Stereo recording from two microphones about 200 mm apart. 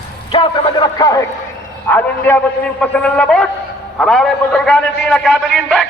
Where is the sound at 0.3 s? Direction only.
25° left (ahead or behind).